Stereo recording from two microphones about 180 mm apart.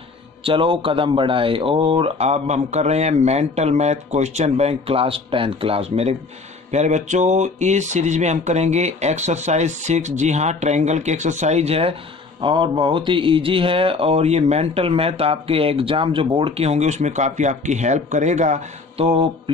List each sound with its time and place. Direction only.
0.4 s speech: 30° right (ahead or behind)